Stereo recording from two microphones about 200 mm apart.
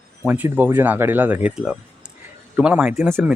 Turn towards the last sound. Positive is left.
turn(degrees=-10)  # may be behind; listen again after turning